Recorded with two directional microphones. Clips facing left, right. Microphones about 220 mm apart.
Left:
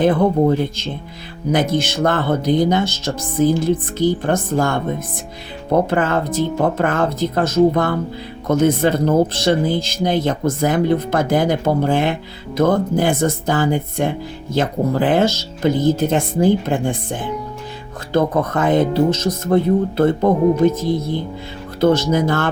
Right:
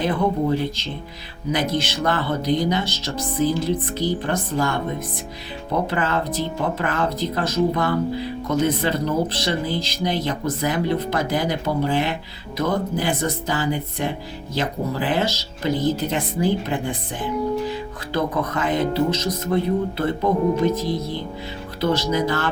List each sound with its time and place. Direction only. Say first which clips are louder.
0.0 s speech: left 7 dB; 50° left (ahead or behind)